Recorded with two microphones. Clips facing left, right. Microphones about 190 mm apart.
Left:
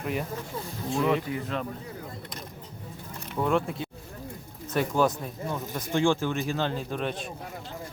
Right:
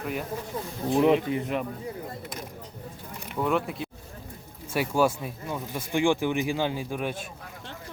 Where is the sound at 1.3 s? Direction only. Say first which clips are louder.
Right 3 dB; 20° right (ahead or behind).